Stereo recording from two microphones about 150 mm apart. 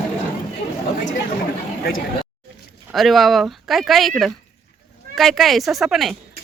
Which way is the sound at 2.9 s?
Centre (ahead or behind).